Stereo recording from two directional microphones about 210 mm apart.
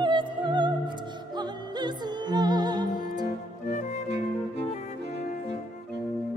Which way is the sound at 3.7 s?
35° left (ahead or behind).